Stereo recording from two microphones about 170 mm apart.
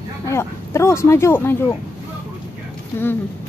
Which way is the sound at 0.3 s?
15° left (ahead or behind).